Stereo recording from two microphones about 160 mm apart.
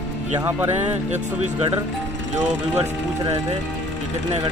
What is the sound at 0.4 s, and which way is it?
Speech, 15° right (ahead or behind).